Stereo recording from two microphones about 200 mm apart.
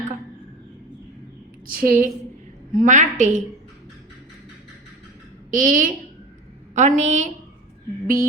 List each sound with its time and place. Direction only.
1.6 s a woman's voice: 45° right (ahead or behind)
5.5 s a woman's voice: 40° right (ahead or behind)
8.0 s mantra: 45° right (ahead or behind)